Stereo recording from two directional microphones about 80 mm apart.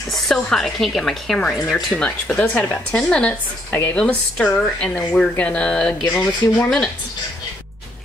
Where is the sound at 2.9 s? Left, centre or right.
Centre.